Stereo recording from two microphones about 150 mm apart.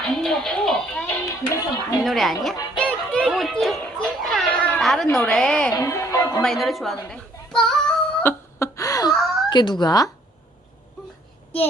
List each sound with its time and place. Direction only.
0.2 s music: 5° left (ahead or behind)
1.3 s a sound: 20° left (ahead or behind)
2.0 s music: centre (ahead or behind)
5.0 s a woman's voice: 5° left (ahead or behind)
5.7 s music: 20° left (ahead or behind)
6.4 s a woman's voice: centre (ahead or behind)
7.1 s a sound: 5° left (ahead or behind); by 9.1 s 25° left (ahead or behind)
9.1 s a sound: centre (ahead or behind)
9.5 s speech: 30° left (ahead or behind)